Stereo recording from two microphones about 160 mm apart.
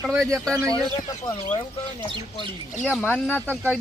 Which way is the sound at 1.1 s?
30° left (ahead or behind).